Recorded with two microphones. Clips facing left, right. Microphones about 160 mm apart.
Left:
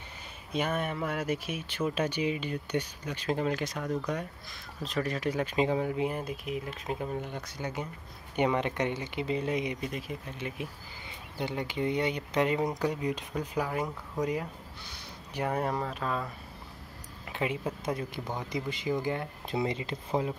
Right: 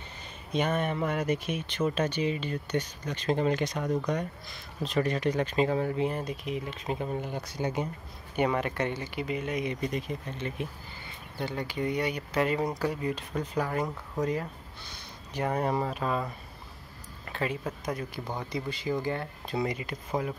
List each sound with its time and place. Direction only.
0.5 s speech: 5° left (ahead or behind)
7.6 s speech: 20° right (ahead or behind)
8.4 s speech: 20° left (ahead or behind)
9.7 s speech: 5° left (ahead or behind)
11.3 s speech: 20° left (ahead or behind)
15.9 s speech: 5° right (ahead or behind)
17.3 s speech: 15° left (ahead or behind)